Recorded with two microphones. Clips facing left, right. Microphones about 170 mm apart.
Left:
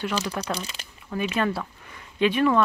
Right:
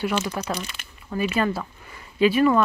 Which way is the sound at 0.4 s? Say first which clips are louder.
Right 1 dB; 5° right (ahead or behind).